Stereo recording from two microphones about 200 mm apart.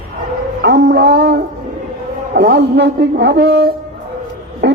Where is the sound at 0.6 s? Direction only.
55° right (ahead or behind).